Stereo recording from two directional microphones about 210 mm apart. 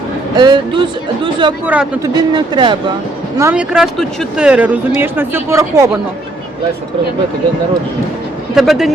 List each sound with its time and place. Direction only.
0.3 s speech: 20° right (ahead or behind)
1.6 s speech: 5° right (ahead or behind)
2.1 s speech: 20° right (ahead or behind)
3.3 s speech: 10° right (ahead or behind)
8.5 s speech: centre (ahead or behind)